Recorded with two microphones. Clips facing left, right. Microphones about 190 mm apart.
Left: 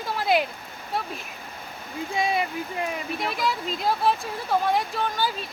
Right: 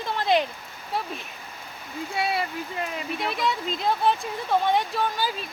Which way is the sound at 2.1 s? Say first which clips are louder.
Left 2 dB; 15° left (ahead or behind).